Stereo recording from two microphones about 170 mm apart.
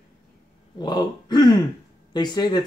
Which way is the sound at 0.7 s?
25° left (ahead or behind).